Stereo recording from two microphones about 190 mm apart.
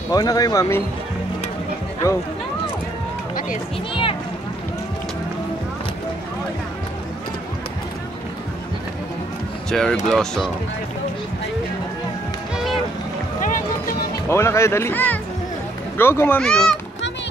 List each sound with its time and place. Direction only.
0.1 s speech: 20° left (ahead or behind)
3.9 s speech: 25° left (ahead or behind)
9.7 s speech: 5° left (ahead or behind)
13.4 s music: 50° left (ahead or behind)
14.3 s speech: 15° left (ahead or behind)